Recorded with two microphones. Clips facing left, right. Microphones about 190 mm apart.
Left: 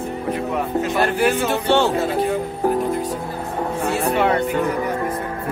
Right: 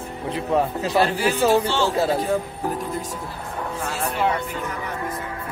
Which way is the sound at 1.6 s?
60° left (ahead or behind).